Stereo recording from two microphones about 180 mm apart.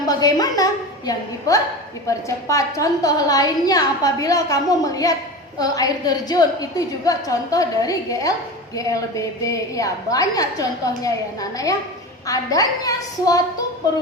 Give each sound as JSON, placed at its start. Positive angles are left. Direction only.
{"t": 0.0, "sound": "a woman's voice", "side_deg": 20}